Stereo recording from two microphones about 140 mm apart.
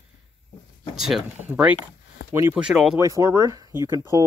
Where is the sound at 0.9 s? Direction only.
5° right (ahead or behind).